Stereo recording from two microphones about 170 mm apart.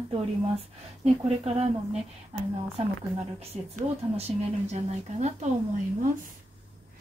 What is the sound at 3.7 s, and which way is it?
Speech, 40° right (ahead or behind).